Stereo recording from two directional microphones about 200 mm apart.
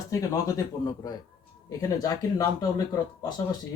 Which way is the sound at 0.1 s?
15° left (ahead or behind).